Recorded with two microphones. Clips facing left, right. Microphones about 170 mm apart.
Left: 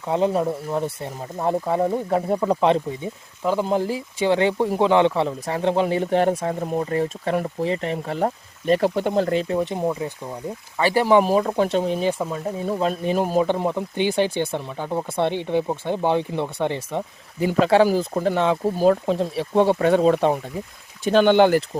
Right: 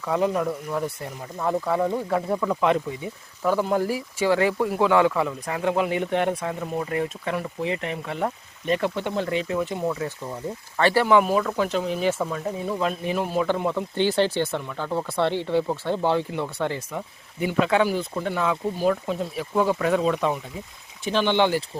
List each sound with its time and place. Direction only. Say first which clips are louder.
0.1 s speech: left 3 dB; 25° left (ahead or behind)
10.8 s speech: even; 10° left (ahead or behind)
11.0 s speech: left 6 dB; 30° left (ahead or behind)
13.4 s speech: left 2 dB; 20° left (ahead or behind)
17.4 s speech: left 4 dB; 35° left (ahead or behind)